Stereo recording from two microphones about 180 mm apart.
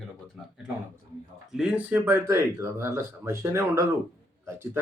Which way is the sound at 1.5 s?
5° right (ahead or behind).